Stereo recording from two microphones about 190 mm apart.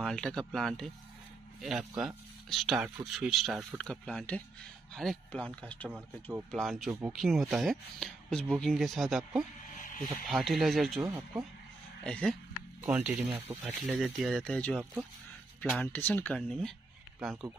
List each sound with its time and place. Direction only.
0.0 s speech: 5° left (ahead or behind)
11.0 s speech: 15° right (ahead or behind)
12.0 s speech: 5° left (ahead or behind)
12.8 s speech: 10° right (ahead or behind)
13.8 s speech: centre (ahead or behind)